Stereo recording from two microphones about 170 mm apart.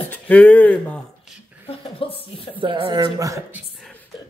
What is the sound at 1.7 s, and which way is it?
Chuckle, 35° left (ahead or behind).